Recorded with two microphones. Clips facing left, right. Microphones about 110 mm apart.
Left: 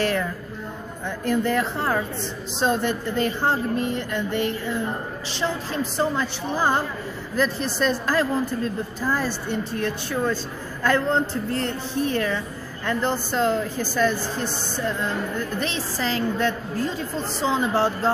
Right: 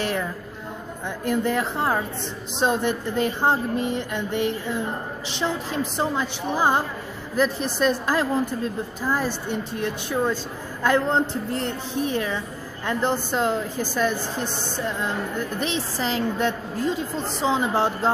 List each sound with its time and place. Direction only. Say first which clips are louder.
0.0 s a sound: left 2 dB; 15° right (ahead or behind)
1.0 s a woman's voice: left 1 dB; 15° right (ahead or behind)
15.6 s a woman's voice: right 1 dB; 20° right (ahead or behind)